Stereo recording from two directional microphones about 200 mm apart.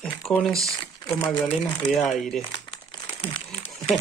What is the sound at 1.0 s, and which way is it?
Crumpling, 10° left (ahead or behind).